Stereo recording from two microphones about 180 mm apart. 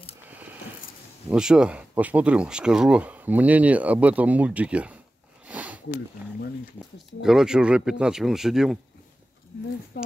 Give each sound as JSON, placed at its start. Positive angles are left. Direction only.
{"t": 1.3, "sound": "speech", "side_deg": -5}
{"t": 5.5, "sound": "sniff", "side_deg": -10}
{"t": 7.2, "sound": "speech", "side_deg": -5}
{"t": 9.9, "sound": "speech", "side_deg": 60}